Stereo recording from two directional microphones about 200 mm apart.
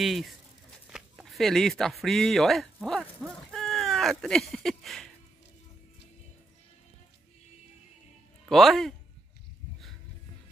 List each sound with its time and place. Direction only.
0.0 s speech: centre (ahead or behind)
8.5 s speech: centre (ahead or behind)